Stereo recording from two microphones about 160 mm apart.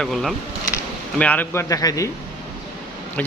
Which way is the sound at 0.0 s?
Centre (ahead or behind).